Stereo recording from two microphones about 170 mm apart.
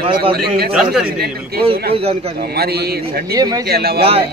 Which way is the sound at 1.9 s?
35° right (ahead or behind).